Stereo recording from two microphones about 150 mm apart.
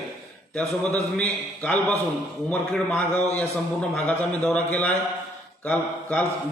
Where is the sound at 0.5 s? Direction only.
5° left (ahead or behind).